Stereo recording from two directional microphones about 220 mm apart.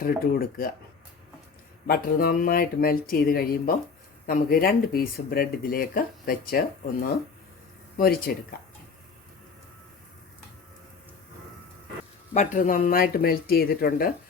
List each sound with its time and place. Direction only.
0.0 s speech: 40° left (ahead or behind)
1.9 s speech: 45° left (ahead or behind)
7.9 s speech: 40° left (ahead or behind)
12.3 s speech: 35° left (ahead or behind)